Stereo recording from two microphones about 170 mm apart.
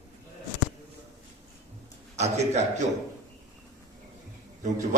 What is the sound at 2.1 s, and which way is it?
Speech, 40° right (ahead or behind).